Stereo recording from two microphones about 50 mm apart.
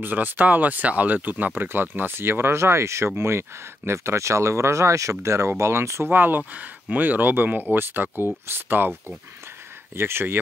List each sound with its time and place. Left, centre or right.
0.0 s speech: right
3.2 s speech: right
5.2 s speech: right
5.6 s speech: right
6.0 s speech: right
9.9 s speech: right